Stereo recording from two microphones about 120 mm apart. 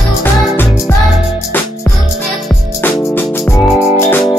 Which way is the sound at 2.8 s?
20° left (ahead or behind).